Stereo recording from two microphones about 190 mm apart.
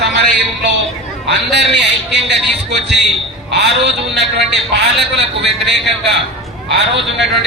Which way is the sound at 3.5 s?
65° right (ahead or behind).